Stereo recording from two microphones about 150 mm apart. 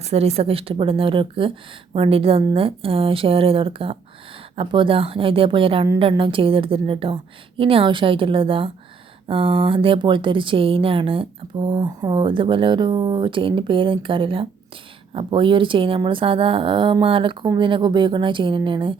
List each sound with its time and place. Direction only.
0.0 s a woman's voice: 45° right (ahead or behind)